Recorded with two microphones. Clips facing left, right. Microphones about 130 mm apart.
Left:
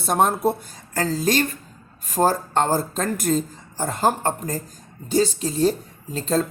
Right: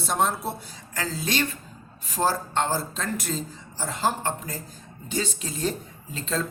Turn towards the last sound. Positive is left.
turn(degrees=40)  # may be behind; listen again after turning